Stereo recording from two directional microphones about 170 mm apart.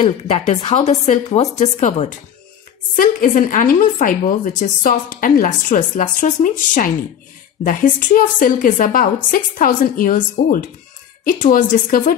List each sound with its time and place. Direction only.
0.0 s a woman's voice: 35° left (ahead or behind); by 12.2 s 55° left (ahead or behind)